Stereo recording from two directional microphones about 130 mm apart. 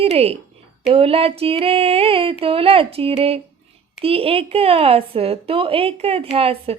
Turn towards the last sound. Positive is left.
turn(degrees=-50)  # may be behind; listen again after turning